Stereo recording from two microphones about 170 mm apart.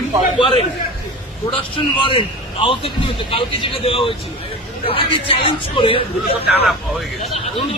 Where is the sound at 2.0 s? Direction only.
30° left (ahead or behind).